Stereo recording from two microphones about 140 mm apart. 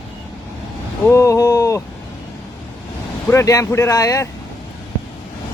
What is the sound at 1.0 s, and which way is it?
Speech, 25° left (ahead or behind).